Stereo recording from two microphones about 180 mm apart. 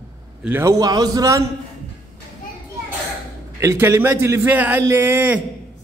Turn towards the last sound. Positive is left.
turn(degrees=-10)  # may be behind; listen again after turning